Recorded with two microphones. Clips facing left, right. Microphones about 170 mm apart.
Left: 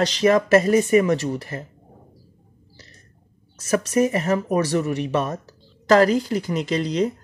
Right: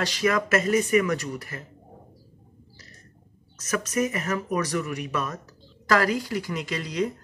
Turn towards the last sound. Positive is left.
turn(degrees=30)  # may be behind; listen again after turning